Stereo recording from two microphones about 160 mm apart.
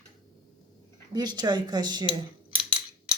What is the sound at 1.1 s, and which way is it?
Speech, 25° right (ahead or behind).